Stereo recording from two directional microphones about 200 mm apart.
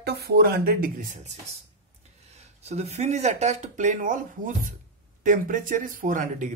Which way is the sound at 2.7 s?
30° right (ahead or behind).